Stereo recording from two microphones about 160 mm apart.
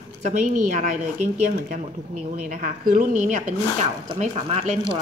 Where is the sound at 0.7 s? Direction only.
50° right (ahead or behind).